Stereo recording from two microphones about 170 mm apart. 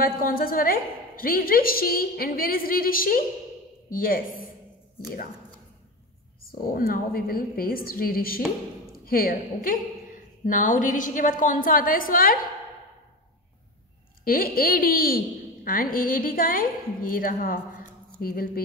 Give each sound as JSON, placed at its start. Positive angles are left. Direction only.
{"t": 0.0, "sound": "a woman's voice", "side_deg": 60}
{"t": 6.4, "sound": "a woman's voice", "side_deg": 60}
{"t": 14.2, "sound": "a woman's voice", "side_deg": 60}